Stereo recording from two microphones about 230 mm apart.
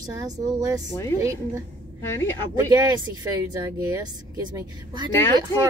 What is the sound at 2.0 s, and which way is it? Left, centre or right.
Speech, centre.